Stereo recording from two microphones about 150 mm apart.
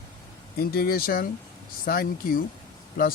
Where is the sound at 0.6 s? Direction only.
85° left.